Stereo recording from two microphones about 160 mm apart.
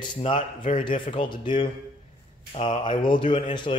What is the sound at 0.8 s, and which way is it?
Speech, 30° left (ahead or behind).